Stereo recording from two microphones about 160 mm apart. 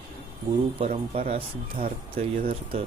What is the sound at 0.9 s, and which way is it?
Speech, 60° right (ahead or behind).